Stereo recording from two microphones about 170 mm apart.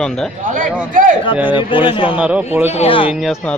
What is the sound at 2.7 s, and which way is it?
Speech, 35° left (ahead or behind).